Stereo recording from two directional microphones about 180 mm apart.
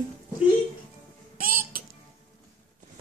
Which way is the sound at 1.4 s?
50° right (ahead or behind).